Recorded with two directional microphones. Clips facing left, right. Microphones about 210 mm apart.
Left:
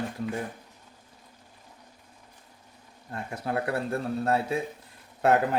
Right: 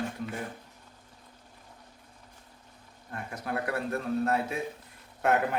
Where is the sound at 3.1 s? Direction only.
30° left (ahead or behind).